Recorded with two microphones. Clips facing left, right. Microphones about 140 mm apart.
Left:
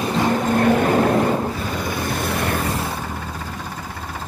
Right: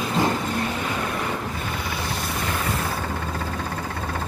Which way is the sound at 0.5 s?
55° left (ahead or behind).